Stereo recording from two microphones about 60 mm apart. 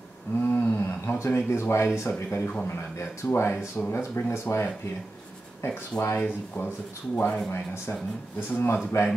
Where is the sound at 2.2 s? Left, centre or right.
Left.